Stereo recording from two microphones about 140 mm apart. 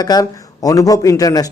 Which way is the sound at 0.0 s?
25° left (ahead or behind).